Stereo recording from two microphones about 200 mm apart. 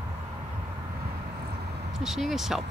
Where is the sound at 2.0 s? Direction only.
Centre (ahead or behind).